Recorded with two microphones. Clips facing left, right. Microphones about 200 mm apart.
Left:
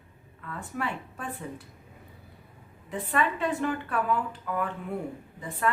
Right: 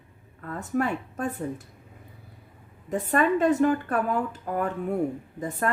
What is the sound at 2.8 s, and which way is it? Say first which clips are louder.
A woman's voice: right 5 dB; 45° right (ahead or behind).